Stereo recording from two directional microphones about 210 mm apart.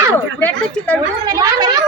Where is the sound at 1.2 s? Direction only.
20° right (ahead or behind).